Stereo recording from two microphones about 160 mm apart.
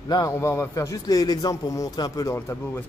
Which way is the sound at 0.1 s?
20° left (ahead or behind).